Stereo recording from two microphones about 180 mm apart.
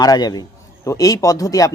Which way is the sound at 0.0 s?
20° left (ahead or behind).